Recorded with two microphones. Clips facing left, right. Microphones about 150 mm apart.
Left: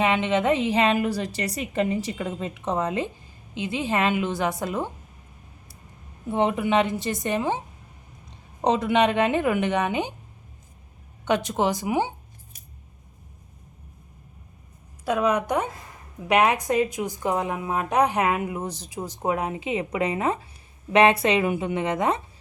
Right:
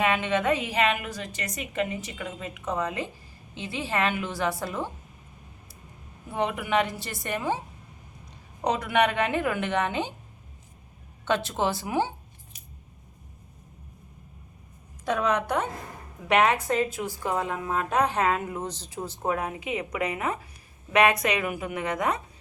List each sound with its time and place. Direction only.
0.0 s a woman's voice: 20° left (ahead or behind)
6.3 s a woman's voice: 25° left (ahead or behind)
8.6 s a woman's voice: 25° left (ahead or behind)
11.3 s a woman's voice: 15° left (ahead or behind)
15.0 s a woman's voice: 10° left (ahead or behind)